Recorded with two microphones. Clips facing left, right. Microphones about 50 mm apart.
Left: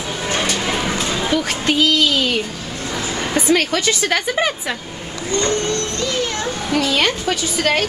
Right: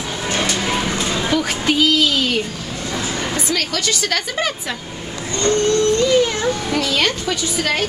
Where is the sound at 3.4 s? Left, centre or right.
Left.